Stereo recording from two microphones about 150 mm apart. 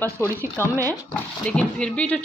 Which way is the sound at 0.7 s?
20° right (ahead or behind).